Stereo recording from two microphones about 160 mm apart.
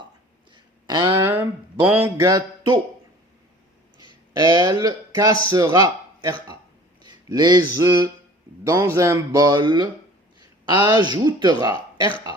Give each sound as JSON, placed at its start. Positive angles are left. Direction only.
{"t": 0.5, "sound": "a sound", "side_deg": -25}
{"t": 1.2, "sound": "speech", "side_deg": -15}
{"t": 2.3, "sound": "speech", "side_deg": -25}
{"t": 4.4, "sound": "speech", "side_deg": -25}
{"t": 11.7, "sound": "speech", "side_deg": 30}